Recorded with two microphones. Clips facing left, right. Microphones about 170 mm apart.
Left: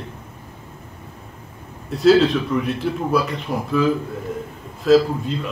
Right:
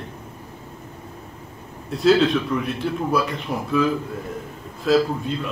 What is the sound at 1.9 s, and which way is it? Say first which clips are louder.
A man's voice: left 3 dB; centre (ahead or behind).